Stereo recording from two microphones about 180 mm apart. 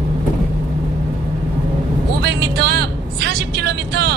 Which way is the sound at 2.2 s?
65° right (ahead or behind).